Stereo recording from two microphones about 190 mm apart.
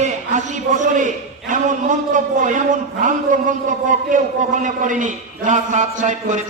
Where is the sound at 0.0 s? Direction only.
40° right (ahead or behind).